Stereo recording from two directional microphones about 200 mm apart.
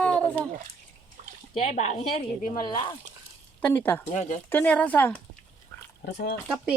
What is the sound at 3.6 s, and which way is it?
A woman's voice, 10° left (ahead or behind).